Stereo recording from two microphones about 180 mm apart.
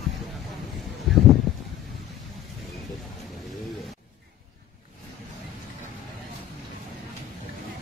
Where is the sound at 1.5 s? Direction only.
Centre (ahead or behind).